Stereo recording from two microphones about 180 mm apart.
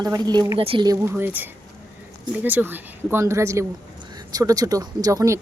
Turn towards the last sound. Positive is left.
turn(degrees=-15)  # may be behind; listen again after turning